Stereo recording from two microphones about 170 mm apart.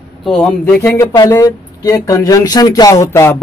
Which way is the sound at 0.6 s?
15° left (ahead or behind).